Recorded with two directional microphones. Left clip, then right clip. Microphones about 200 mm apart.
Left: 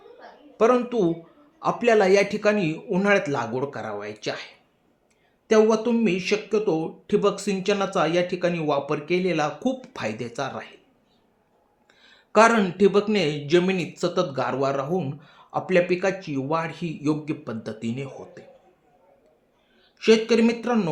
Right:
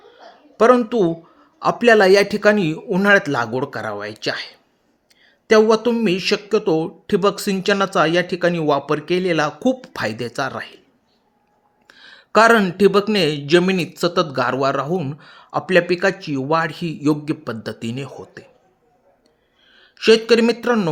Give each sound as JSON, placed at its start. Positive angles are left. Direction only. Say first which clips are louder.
{"t": 0.5, "sound": "speech", "louder": "right 6 dB", "side_deg": -45}
{"t": 5.5, "sound": "speech", "louder": "right 5 dB", "side_deg": -45}
{"t": 11.9, "sound": "speech", "louder": "right 9 dB", "side_deg": -45}
{"t": 20.0, "sound": "speech", "louder": "right 5 dB", "side_deg": -45}